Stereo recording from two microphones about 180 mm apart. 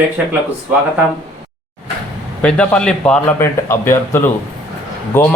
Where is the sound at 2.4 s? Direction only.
5° left (ahead or behind).